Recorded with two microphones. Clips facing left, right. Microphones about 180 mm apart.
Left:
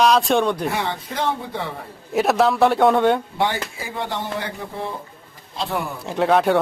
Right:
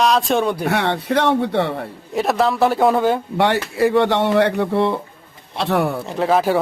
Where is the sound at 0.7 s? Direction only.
70° right (ahead or behind).